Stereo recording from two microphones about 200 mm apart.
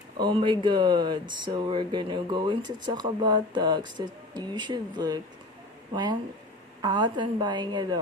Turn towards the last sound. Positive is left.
turn(degrees=-20)  # may be behind; listen again after turning